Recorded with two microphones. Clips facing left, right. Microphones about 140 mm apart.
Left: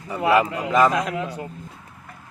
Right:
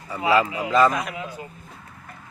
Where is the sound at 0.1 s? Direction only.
20° left (ahead or behind).